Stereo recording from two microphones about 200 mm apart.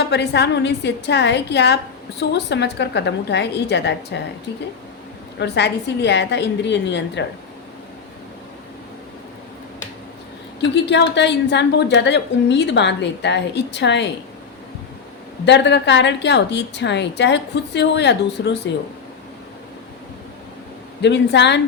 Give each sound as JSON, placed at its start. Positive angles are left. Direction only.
{"t": 0.1, "sound": "a woman's voice", "side_deg": 60}
{"t": 5.4, "sound": "a woman's voice", "side_deg": 55}
{"t": 10.6, "sound": "a woman's voice", "side_deg": 60}
{"t": 15.4, "sound": "a woman's voice", "side_deg": 60}
{"t": 21.0, "sound": "a woman's voice", "side_deg": 60}